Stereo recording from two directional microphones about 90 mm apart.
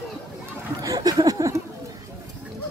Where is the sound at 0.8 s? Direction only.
45° right (ahead or behind).